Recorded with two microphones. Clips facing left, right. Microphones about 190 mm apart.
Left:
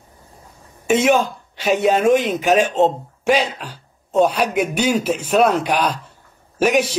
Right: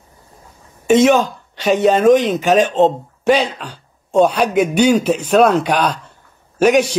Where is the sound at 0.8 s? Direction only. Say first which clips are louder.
Right 4 dB; 10° left (ahead or behind).